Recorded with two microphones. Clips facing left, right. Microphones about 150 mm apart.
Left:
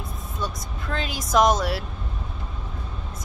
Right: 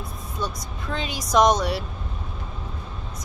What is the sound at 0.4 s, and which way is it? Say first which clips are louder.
Speech: right 1 dB; centre (ahead or behind).